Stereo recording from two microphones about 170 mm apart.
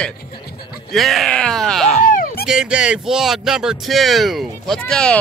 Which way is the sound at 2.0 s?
55° left (ahead or behind).